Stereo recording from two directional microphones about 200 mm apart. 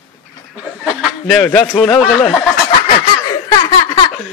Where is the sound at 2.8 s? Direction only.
20° left (ahead or behind).